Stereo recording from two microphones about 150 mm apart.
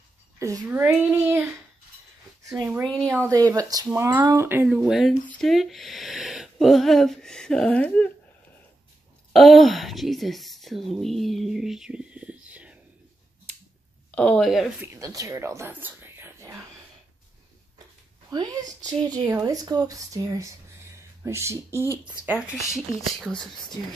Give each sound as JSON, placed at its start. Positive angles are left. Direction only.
{"t": 0.7, "sound": "speech", "side_deg": -15}
{"t": 2.6, "sound": "speech", "side_deg": -15}
{"t": 4.6, "sound": "speech", "side_deg": -5}
{"t": 9.3, "sound": "speech", "side_deg": 0}
{"t": 14.1, "sound": "speech", "side_deg": 10}
{"t": 14.8, "sound": "speech", "side_deg": -20}
{"t": 18.3, "sound": "speech", "side_deg": -30}
{"t": 22.7, "sound": "speech", "side_deg": 5}